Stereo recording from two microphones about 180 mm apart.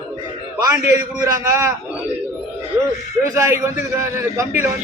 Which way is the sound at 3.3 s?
15° right (ahead or behind).